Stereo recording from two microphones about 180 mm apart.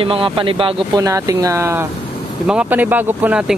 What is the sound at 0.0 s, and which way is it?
Speech, 30° right (ahead or behind).